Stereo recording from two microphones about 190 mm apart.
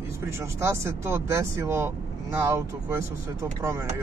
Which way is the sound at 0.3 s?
15° right (ahead or behind).